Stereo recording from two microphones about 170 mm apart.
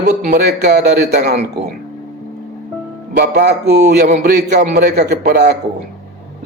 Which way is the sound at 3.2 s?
70° right (ahead or behind).